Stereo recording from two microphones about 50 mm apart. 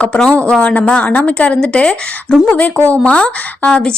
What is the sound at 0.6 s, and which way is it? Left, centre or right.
Speech, left.